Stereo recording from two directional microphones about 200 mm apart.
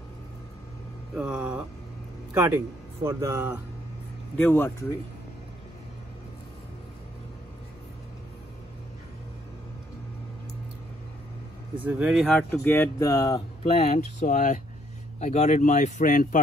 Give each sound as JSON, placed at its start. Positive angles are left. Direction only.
{"t": 1.1, "sound": "speech", "side_deg": -5}
{"t": 4.4, "sound": "speech", "side_deg": 10}
{"t": 11.8, "sound": "speech", "side_deg": -10}
{"t": 13.6, "sound": "speech", "side_deg": 30}